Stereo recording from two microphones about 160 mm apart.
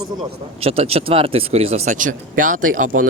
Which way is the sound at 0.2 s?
35° right (ahead or behind).